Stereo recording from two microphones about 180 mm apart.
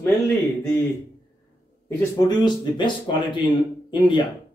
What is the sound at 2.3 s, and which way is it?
Speech, 25° left (ahead or behind).